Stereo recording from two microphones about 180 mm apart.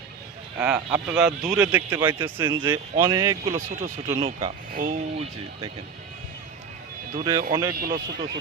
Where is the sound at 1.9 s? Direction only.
25° right (ahead or behind).